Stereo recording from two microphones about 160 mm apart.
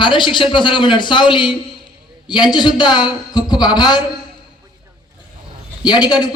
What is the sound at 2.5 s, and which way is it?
A man's voice, 25° left (ahead or behind).